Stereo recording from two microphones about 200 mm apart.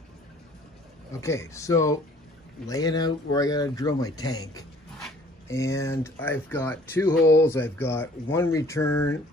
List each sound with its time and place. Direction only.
1.2 s speech: 15° left (ahead or behind)